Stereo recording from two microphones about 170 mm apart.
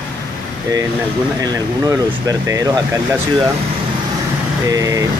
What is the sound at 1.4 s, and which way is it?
Speech, 20° right (ahead or behind).